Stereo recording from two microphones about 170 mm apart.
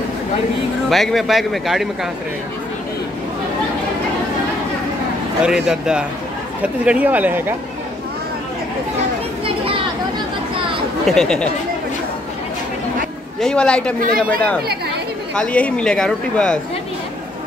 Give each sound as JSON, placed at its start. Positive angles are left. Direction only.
{"t": 0.8, "sound": "speech", "side_deg": 0}
{"t": 5.7, "sound": "speech", "side_deg": -5}
{"t": 11.1, "sound": "speech", "side_deg": 5}
{"t": 13.4, "sound": "speech", "side_deg": 5}
{"t": 13.9, "sound": "speech", "side_deg": -55}
{"t": 15.3, "sound": "speech", "side_deg": 5}